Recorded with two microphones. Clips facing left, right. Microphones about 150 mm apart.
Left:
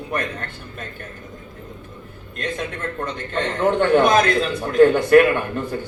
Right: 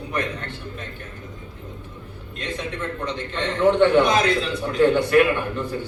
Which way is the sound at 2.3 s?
50° left (ahead or behind).